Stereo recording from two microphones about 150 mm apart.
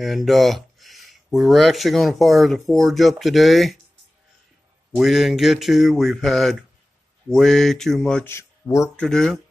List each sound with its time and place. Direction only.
0.0 s speech: centre (ahead or behind)
4.9 s speech: centre (ahead or behind)
8.3 s speech: 20° left (ahead or behind)
8.9 s speech: 5° left (ahead or behind)